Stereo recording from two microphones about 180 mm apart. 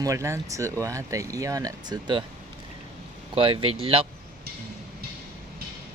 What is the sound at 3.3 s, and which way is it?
Speech, 30° right (ahead or behind).